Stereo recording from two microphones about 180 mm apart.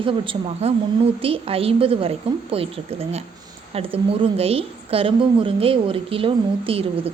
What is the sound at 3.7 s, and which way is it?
A woman's voice, 30° right (ahead or behind).